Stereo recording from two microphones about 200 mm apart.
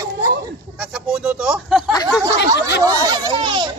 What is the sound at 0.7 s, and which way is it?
Speech, 5° right (ahead or behind).